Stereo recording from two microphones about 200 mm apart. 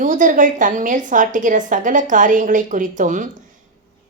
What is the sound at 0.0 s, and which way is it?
Speech, 40° right (ahead or behind).